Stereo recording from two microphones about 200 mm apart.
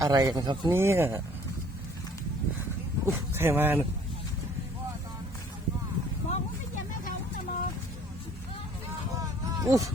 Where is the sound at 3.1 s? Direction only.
10° right (ahead or behind).